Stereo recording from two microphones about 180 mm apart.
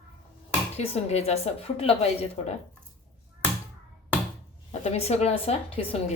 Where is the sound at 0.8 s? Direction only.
35° left (ahead or behind).